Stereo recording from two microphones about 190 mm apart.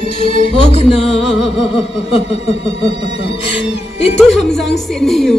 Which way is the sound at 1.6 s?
30° left (ahead or behind).